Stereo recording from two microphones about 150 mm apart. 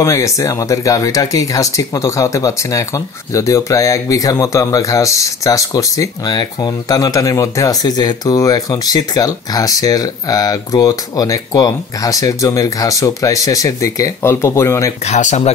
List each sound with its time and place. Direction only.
0.0 s speech: 20° left (ahead or behind)
15.0 s speech: 50° left (ahead or behind)